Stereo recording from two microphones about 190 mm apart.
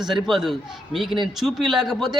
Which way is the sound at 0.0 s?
Centre (ahead or behind).